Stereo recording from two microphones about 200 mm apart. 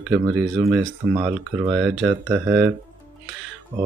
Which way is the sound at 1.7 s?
Centre (ahead or behind).